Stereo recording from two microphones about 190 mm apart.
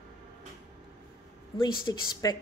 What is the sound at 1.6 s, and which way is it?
Speech, 20° left (ahead or behind).